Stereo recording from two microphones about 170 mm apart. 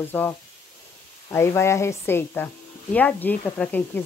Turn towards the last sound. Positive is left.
turn(degrees=10)  # may be behind; listen again after turning